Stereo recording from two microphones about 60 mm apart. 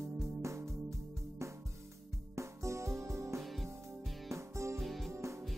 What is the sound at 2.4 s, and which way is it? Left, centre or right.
Music, right.